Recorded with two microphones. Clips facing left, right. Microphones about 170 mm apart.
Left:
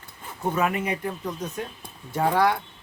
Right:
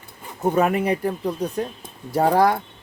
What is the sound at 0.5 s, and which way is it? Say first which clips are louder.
Speech: right 6 dB; 35° right (ahead or behind).